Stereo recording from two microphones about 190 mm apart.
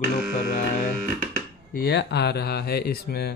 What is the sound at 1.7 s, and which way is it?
Speech, 55° left (ahead or behind).